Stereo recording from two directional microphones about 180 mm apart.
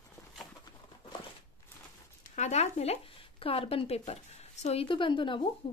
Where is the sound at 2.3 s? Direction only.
40° left (ahead or behind).